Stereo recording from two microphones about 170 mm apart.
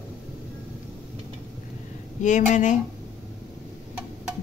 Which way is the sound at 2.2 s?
45° left (ahead or behind).